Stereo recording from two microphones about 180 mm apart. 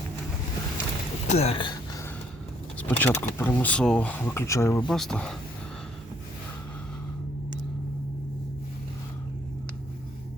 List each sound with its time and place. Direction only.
1.3 s a sound: 35° left (ahead or behind)
2.7 s speech: 10° left (ahead or behind)
4.9 s speech: centre (ahead or behind)